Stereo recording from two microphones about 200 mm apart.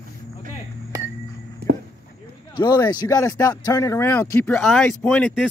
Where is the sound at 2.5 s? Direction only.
20° left (ahead or behind).